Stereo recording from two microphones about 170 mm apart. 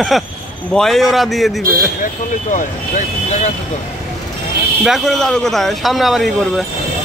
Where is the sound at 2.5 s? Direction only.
45° left (ahead or behind).